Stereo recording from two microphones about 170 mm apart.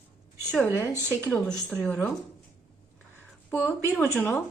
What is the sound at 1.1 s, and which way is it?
Speech, 10° left (ahead or behind).